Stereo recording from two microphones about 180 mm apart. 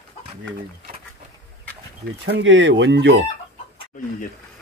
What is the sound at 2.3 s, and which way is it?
Speech, 90° right.